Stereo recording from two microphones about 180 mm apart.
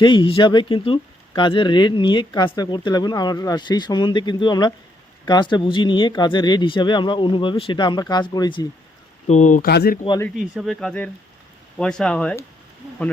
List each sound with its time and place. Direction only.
0.0 s speech: 25° left (ahead or behind)
9.2 s speech: 40° left (ahead or behind); by 10.0 s 60° left (ahead or behind)
10.5 s speech: centre (ahead or behind)